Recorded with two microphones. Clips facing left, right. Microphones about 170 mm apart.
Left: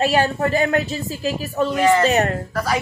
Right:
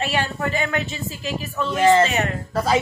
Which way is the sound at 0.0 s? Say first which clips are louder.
Left 6 dB; 40° left (ahead or behind).